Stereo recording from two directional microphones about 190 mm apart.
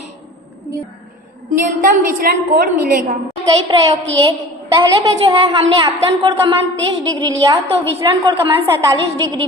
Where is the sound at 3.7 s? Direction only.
25° right (ahead or behind).